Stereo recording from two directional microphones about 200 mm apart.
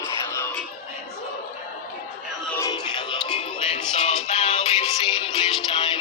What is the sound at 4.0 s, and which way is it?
Music, 35° left (ahead or behind).